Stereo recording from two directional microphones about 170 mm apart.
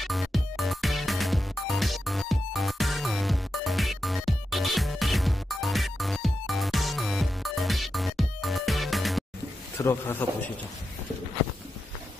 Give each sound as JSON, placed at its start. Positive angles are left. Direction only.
{"t": 0.0, "sound": "music", "side_deg": 0}
{"t": 9.8, "sound": "a man's voice", "side_deg": 15}